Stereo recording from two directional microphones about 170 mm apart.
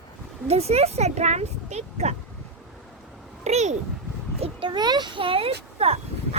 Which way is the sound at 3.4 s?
40° right (ahead or behind).